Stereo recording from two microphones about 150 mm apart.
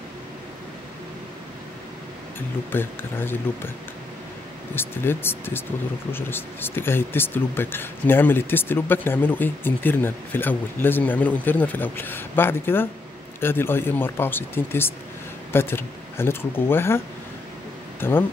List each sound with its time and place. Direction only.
2.7 s speech: 15° left (ahead or behind)
4.7 s speech: 15° left (ahead or behind)
18.0 s speech: 15° left (ahead or behind)